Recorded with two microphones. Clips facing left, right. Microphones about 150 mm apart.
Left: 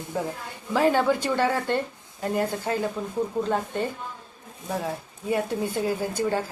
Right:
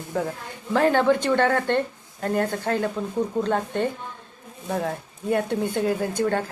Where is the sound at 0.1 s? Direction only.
15° left (ahead or behind).